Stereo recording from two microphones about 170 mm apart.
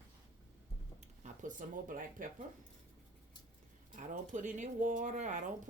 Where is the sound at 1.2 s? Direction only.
50° right (ahead or behind).